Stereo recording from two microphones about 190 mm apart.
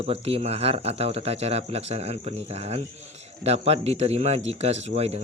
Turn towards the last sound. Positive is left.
turn(degrees=-35)  # may be behind; listen again after turning